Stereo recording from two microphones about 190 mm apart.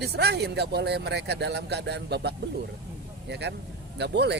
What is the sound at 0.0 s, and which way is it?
Speech, 60° right (ahead or behind).